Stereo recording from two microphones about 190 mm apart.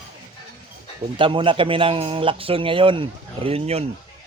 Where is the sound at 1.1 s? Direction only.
25° right (ahead or behind).